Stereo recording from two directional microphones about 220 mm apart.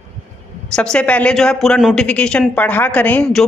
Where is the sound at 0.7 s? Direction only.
5° left (ahead or behind).